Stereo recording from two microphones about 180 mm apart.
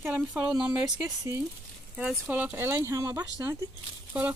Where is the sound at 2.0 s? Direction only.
5° right (ahead or behind).